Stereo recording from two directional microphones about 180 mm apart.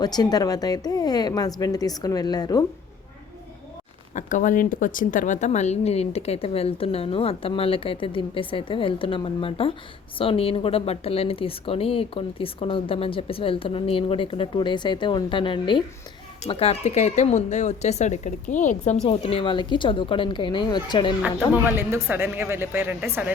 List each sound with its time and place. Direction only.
0.0 s a woman's voice: 20° left (ahead or behind)
4.1 s a woman's voice: 45° left (ahead or behind)
19.0 s a woman's voice: 30° left (ahead or behind)
21.2 s speech: 5° right (ahead or behind)